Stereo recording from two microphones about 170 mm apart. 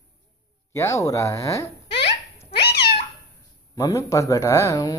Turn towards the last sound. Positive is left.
turn(degrees=20)  # may be behind; listen again after turning